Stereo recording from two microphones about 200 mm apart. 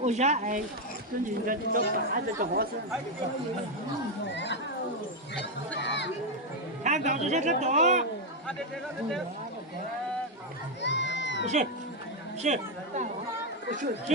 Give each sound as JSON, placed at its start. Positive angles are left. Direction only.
{"t": 0.0, "sound": "a man's voice", "side_deg": -35}
{"t": 4.4, "sound": "a sound", "side_deg": 60}
{"t": 5.8, "sound": "speech", "side_deg": 60}
{"t": 6.8, "sound": "a man's voice", "side_deg": -35}
{"t": 10.8, "sound": "crowd", "side_deg": 60}
{"t": 11.4, "sound": "a man's voice", "side_deg": -35}